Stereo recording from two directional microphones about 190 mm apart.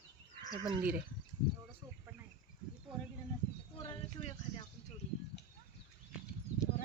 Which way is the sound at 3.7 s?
30° left (ahead or behind).